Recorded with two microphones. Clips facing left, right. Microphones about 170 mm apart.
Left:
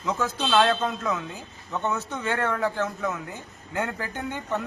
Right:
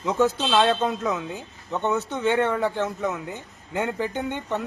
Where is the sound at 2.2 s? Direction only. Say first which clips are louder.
Right 6 dB; 5° right (ahead or behind).